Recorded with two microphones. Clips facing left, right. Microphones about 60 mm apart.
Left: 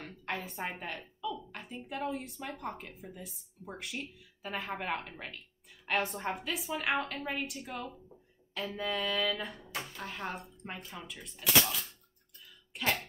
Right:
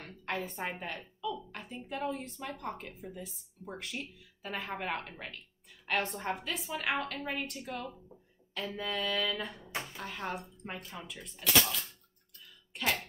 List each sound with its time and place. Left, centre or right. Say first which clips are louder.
0.0 s a woman's voice: right 1 dB; centre
12.7 s throat clearing: even; centre